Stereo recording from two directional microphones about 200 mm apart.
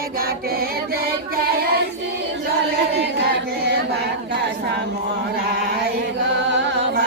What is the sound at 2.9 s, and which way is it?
Singing, 60° right (ahead or behind).